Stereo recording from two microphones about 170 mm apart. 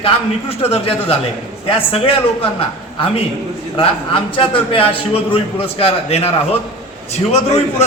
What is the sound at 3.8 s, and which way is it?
A man's voice, 30° left (ahead or behind).